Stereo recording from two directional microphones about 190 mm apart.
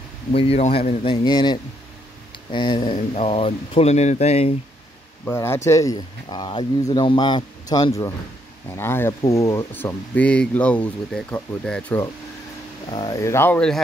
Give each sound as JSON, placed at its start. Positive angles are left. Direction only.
{"t": 0.3, "sound": "speech", "side_deg": 30}
{"t": 5.2, "sound": "speech", "side_deg": 15}
{"t": 12.9, "sound": "speech", "side_deg": 20}